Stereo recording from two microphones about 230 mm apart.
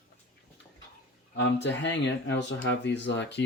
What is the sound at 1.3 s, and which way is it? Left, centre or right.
Speech, left.